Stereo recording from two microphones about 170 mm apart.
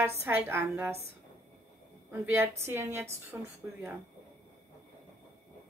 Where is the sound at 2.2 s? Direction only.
15° right (ahead or behind).